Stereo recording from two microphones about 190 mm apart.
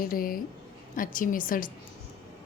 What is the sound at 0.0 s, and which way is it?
A woman's voice, 50° left (ahead or behind).